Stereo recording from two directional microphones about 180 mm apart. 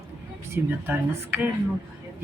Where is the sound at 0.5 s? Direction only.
10° right (ahead or behind).